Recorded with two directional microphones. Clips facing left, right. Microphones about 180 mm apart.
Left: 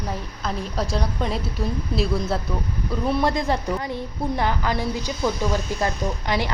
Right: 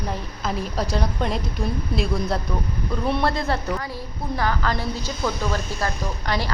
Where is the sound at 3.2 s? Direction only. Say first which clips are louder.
Left 1 dB; 15° left (ahead or behind).